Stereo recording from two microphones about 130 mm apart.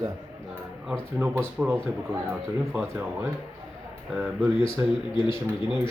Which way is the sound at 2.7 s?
10° right (ahead or behind).